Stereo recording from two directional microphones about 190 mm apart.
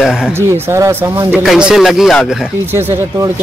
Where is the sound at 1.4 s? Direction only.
Centre (ahead or behind).